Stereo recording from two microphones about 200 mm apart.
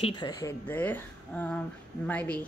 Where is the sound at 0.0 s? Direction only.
20° left (ahead or behind).